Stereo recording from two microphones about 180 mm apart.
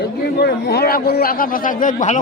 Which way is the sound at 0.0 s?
60° left (ahead or behind).